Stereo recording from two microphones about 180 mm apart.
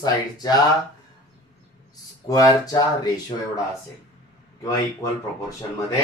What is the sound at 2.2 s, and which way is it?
Speech, 20° left (ahead or behind).